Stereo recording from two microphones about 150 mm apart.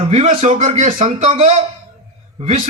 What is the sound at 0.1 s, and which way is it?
A man's voice, 45° right (ahead or behind).